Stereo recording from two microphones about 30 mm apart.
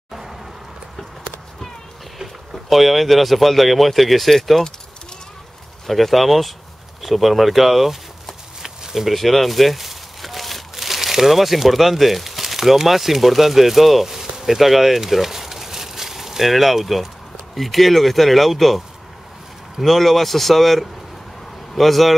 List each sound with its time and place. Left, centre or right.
0.1 s a sound: centre
2.5 s speech: centre
5.9 s speech: centre
8.6 s a sound: right
9.0 s speech: centre
19.8 s speech: centre